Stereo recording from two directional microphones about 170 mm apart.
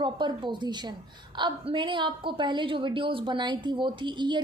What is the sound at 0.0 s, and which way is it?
A woman's voice, 25° right (ahead or behind).